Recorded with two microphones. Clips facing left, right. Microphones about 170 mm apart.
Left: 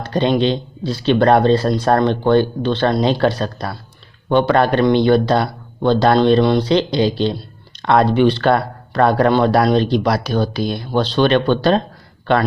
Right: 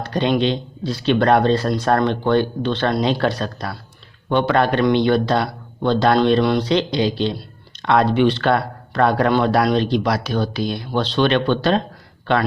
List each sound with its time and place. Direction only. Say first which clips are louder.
0.0 s speech: left 2 dB; 30° left (ahead or behind)